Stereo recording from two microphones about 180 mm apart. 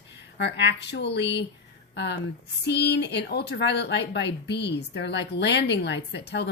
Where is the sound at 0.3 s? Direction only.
70° left (ahead or behind).